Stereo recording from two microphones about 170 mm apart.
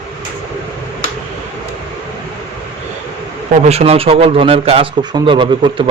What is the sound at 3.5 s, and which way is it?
A man's voice, 40° right (ahead or behind).